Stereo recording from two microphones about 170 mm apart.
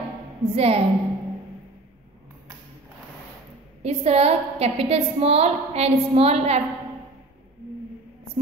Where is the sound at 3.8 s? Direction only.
40° right (ahead or behind).